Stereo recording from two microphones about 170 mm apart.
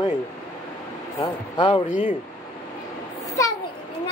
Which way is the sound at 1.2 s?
30° left (ahead or behind).